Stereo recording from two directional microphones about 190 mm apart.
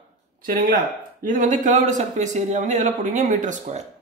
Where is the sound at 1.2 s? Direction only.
40° right (ahead or behind).